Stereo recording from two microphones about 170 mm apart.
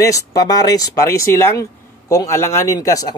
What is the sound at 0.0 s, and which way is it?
Speech, 20° left (ahead or behind).